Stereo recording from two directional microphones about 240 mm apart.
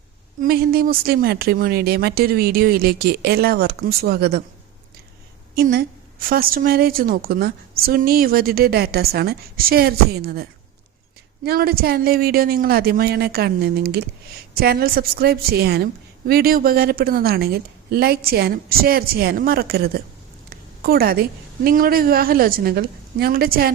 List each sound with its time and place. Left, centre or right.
0.4 s a woman's voice: right
5.5 s a woman's voice: right
11.4 s a woman's voice: right